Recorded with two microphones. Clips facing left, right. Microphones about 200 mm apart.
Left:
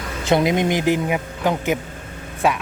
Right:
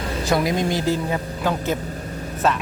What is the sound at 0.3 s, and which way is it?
A man's voice, 20° left (ahead or behind).